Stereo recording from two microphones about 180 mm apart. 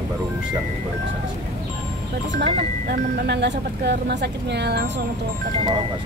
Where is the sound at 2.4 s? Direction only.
65° right (ahead or behind).